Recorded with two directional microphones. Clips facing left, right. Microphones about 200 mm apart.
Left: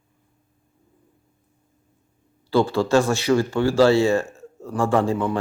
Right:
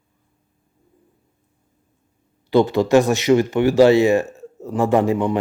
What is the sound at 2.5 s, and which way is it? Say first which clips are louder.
Speech: right 4 dB; 20° right (ahead or behind).